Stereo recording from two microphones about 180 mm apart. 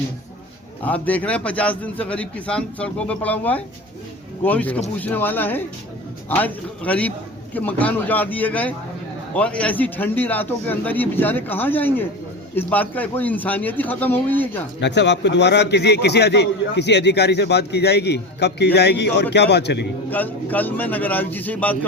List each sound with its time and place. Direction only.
0.9 s a man's voice: 10° left (ahead or behind)
14.8 s a man's voice: 75° left (ahead or behind)
20.1 s a man's voice: 10° left (ahead or behind)